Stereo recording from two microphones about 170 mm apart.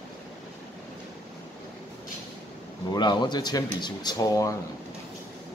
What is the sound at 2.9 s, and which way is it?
A man's voice, 25° left (ahead or behind).